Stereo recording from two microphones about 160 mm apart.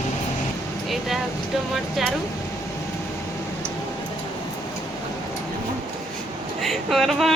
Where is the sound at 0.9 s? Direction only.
Centre (ahead or behind).